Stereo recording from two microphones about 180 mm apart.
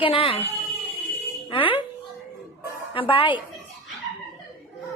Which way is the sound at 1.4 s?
30° left (ahead or behind).